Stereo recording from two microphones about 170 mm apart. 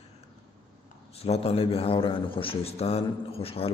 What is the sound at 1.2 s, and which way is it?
A man's voice, 35° left (ahead or behind).